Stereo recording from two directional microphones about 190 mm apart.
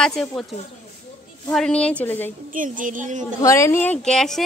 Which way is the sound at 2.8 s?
40° right (ahead or behind).